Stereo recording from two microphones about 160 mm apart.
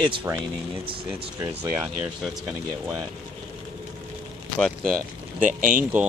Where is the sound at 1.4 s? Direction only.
10° right (ahead or behind).